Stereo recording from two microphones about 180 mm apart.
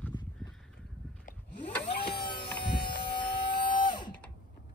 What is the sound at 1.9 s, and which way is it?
Siren, 30° left (ahead or behind).